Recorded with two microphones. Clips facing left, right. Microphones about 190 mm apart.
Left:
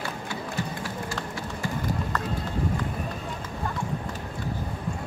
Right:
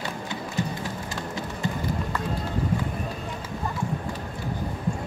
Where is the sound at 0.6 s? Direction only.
20° right (ahead or behind).